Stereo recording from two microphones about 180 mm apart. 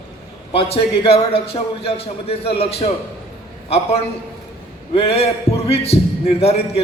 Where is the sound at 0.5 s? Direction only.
30° left (ahead or behind).